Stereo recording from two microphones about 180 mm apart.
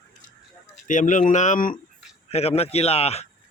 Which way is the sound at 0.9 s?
45° left (ahead or behind).